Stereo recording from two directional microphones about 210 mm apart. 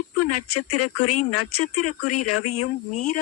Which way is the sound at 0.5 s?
90° left.